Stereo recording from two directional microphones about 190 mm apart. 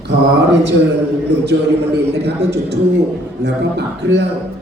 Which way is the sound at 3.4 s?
65° right (ahead or behind).